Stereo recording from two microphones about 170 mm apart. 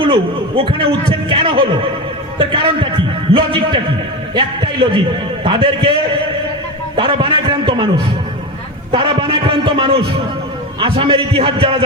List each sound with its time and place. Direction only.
0.0 s a man's voice: 30° right (ahead or behind)
6.9 s a man's voice: 30° right (ahead or behind)
8.9 s a man's voice: 30° right (ahead or behind)